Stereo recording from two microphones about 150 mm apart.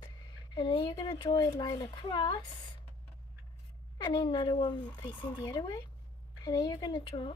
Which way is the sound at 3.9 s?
30° left (ahead or behind).